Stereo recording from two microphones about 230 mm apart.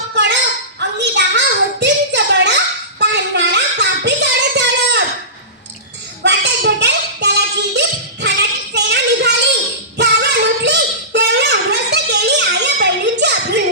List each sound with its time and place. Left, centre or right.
0.8 s a sound: right
3.0 s music: right
6.2 s music: right
10.0 s singing: right